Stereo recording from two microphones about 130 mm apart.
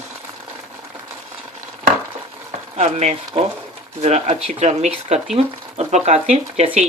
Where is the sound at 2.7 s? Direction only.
60° right (ahead or behind).